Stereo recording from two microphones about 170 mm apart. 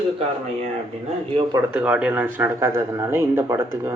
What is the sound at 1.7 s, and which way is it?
Speech, 5° right (ahead or behind).